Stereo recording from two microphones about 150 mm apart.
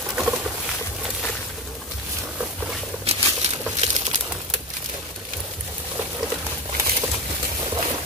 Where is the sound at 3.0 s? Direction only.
45° right (ahead or behind).